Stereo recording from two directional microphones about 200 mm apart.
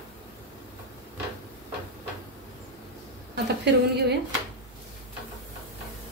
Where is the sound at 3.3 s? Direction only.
55° right (ahead or behind).